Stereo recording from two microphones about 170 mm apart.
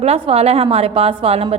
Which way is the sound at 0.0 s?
35° right (ahead or behind).